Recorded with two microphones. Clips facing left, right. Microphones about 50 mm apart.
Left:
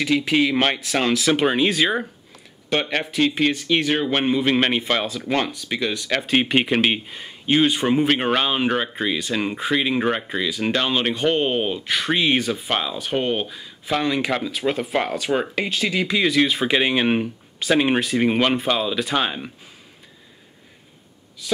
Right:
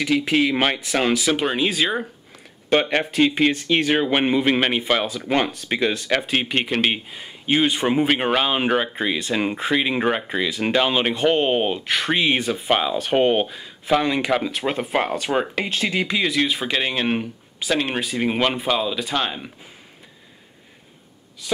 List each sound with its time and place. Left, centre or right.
0.3 s speech: centre
1.3 s speech: centre
2.7 s speech: centre
4.6 s speech: centre
5.7 s speech: right
6.0 s speech: centre
6.3 s speech: centre
12.4 s speech: right
12.6 s speech: centre
13.0 s speech: right
14.4 s speech: right
14.7 s speech: centre
16.3 s speech: centre